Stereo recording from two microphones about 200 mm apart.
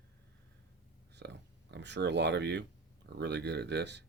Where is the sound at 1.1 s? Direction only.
60° right (ahead or behind).